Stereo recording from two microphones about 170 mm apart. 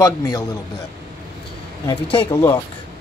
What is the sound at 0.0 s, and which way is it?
Speech, 20° left (ahead or behind).